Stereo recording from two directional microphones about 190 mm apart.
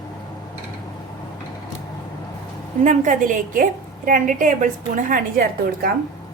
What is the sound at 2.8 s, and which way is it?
A woman's voice, 40° right (ahead or behind).